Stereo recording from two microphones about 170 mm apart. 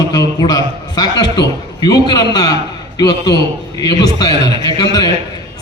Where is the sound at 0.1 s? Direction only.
20° left (ahead or behind).